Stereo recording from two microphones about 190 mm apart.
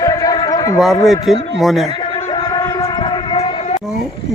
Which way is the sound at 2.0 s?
20° left (ahead or behind).